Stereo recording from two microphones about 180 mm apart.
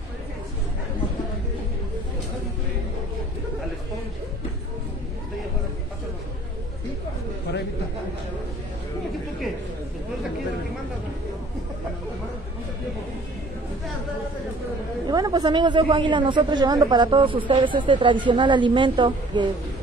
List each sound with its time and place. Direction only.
15.0 s a woman's voice: 20° right (ahead or behind)